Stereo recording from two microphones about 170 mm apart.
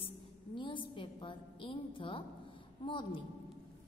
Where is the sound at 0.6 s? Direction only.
30° left (ahead or behind).